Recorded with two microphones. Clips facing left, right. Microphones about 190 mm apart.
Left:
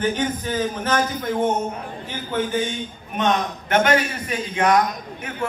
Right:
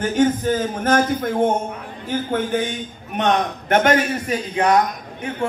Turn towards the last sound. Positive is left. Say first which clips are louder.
# right 3 dB
turn(degrees=-30)  # may be behind; listen again after turning